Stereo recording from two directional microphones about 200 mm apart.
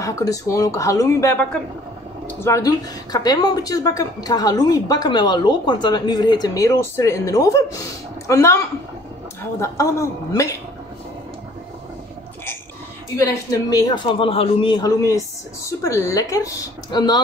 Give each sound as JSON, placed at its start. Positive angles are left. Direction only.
{"t": 0.0, "sound": "a woman's voice", "side_deg": 15}
{"t": 13.1, "sound": "a woman's voice", "side_deg": 15}